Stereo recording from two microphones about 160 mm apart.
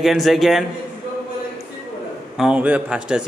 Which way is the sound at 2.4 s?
5° right (ahead or behind).